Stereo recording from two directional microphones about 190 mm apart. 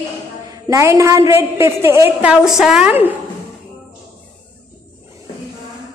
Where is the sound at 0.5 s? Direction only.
15° right (ahead or behind).